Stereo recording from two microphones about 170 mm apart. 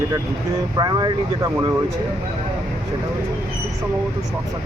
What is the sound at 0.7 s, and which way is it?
Speech, 25° right (ahead or behind).